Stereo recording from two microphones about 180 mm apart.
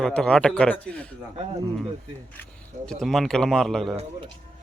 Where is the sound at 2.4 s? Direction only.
5° left (ahead or behind).